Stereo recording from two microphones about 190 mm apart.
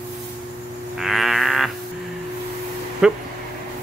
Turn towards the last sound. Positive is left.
turn(degrees=-5)  # may be behind; listen again after turning